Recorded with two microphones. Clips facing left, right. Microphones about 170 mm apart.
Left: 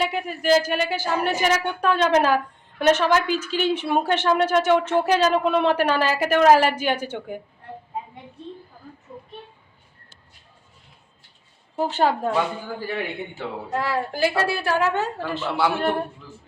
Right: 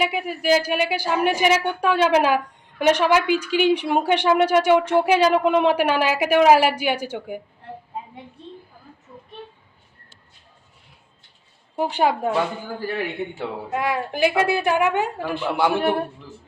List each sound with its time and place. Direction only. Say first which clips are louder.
0.0 s speech: right 1 dB; 10° right (ahead or behind)
11.8 s speech: right 1 dB; 15° right (ahead or behind)
13.7 s speech: right 1 dB; 15° right (ahead or behind)